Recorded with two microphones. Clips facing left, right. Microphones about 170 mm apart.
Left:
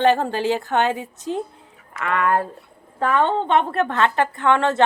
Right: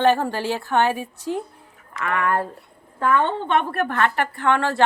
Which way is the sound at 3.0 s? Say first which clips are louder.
Even; 65° left (ahead or behind).